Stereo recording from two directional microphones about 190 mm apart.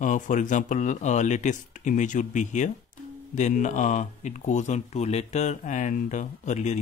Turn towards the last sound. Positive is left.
turn(degrees=40)  # may be behind; listen again after turning